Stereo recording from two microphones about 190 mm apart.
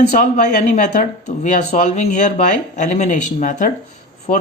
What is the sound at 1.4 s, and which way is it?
A man's voice, 40° left (ahead or behind).